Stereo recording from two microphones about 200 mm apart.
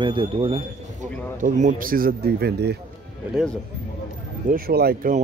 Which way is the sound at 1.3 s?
40° right (ahead or behind).